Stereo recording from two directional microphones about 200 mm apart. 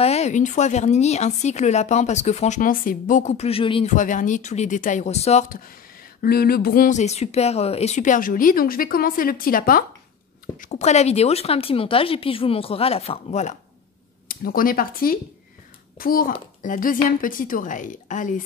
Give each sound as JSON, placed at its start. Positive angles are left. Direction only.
{"t": 0.0, "sound": "speech", "side_deg": 35}
{"t": 3.9, "sound": "speech", "side_deg": 40}
{"t": 6.2, "sound": "speech", "side_deg": 50}